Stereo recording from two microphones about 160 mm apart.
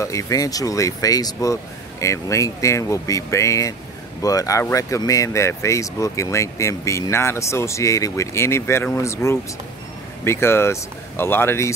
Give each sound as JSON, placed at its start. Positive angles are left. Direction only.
{"t": 0.0, "sound": "speech", "side_deg": 20}